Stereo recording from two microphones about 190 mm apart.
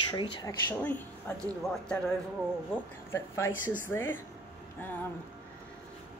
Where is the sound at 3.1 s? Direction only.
15° left (ahead or behind).